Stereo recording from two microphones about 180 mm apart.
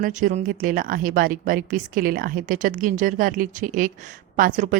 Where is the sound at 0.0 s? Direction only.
45° right (ahead or behind).